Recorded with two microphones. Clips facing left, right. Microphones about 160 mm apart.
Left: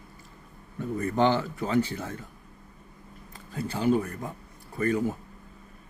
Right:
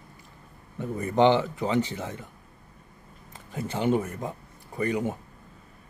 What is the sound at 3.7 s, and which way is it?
A man's voice, 20° right (ahead or behind).